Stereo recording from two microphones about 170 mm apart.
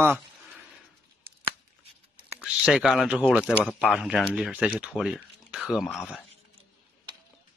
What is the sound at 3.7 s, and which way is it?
Speech, 5° left (ahead or behind).